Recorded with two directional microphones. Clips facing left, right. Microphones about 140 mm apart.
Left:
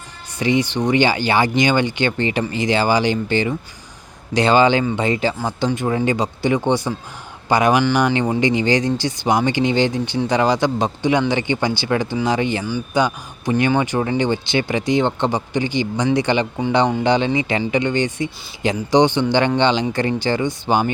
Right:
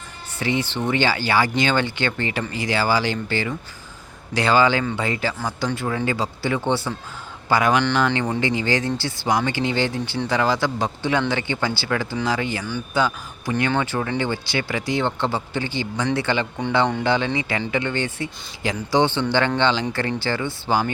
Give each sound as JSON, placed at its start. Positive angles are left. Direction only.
{"t": 0.3, "sound": "a man's voice", "side_deg": 15}